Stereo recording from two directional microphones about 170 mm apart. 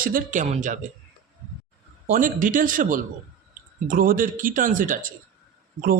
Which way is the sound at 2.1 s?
50° right (ahead or behind).